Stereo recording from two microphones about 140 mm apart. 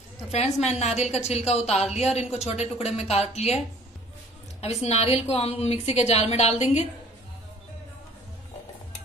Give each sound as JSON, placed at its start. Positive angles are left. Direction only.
{"t": 0.3, "sound": "a woman's voice", "side_deg": 50}